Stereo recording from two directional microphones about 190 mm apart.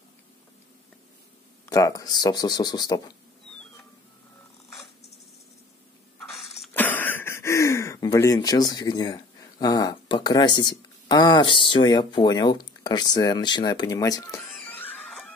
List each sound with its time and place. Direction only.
1.7 s speech: 15° left (ahead or behind)
6.1 s a sound: 5° left (ahead or behind)
14.6 s music: 10° left (ahead or behind)